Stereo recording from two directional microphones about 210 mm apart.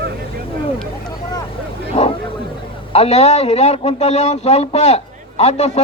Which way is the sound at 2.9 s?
30° left (ahead or behind).